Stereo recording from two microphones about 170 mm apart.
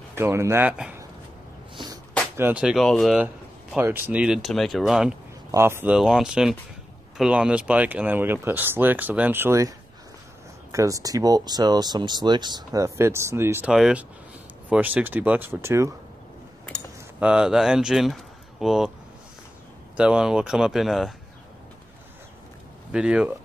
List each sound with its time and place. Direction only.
0.1 s speech: 15° right (ahead or behind)
2.3 s speech: 10° right (ahead or behind)
3.7 s speech: 10° right (ahead or behind)
5.5 s speech: 15° right (ahead or behind)
5.9 s speech: 5° right (ahead or behind)
13.7 s speech: 5° right (ahead or behind)
17.2 s speech: 5° right (ahead or behind)
20.0 s speech: 5° right (ahead or behind)
22.8 s speech: 5° right (ahead or behind)